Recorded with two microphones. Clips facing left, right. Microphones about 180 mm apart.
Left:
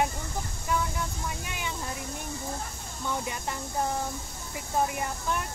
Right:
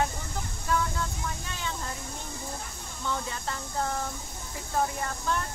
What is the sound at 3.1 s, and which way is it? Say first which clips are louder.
Speech: left 1 dB; 15° left (ahead or behind).